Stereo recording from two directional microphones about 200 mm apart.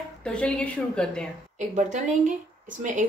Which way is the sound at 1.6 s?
35° right (ahead or behind).